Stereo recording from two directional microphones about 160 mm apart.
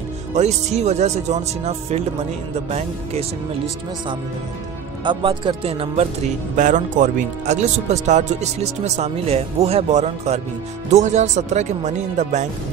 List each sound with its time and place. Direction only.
0.3 s speech: 45° right (ahead or behind)
5.0 s speech: 30° right (ahead or behind)
6.5 s speech: 50° right (ahead or behind)